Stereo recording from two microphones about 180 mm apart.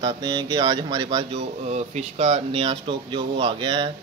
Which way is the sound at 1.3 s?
40° right (ahead or behind).